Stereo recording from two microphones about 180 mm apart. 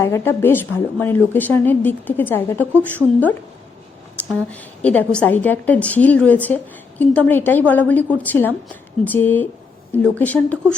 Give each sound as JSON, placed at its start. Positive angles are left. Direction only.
{"t": 0.0, "sound": "a woman's voice", "side_deg": 15}
{"t": 4.2, "sound": "a woman's voice", "side_deg": 10}